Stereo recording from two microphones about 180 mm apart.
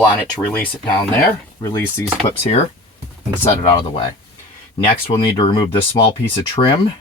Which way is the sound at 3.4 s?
30° left (ahead or behind).